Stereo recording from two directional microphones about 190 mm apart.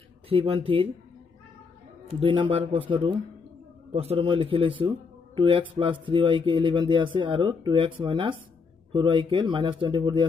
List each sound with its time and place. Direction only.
0.3 s a man's voice: 30° right (ahead or behind)
2.1 s a man's voice: 25° right (ahead or behind)